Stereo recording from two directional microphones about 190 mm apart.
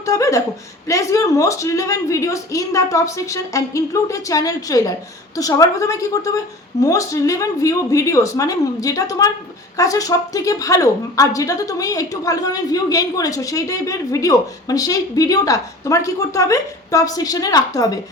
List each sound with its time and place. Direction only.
0.0 s chuckle: 15° left (ahead or behind)
0.9 s a woman's voice: 15° left (ahead or behind)